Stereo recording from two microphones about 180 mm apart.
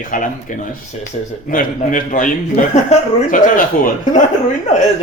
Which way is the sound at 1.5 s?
50° left (ahead or behind).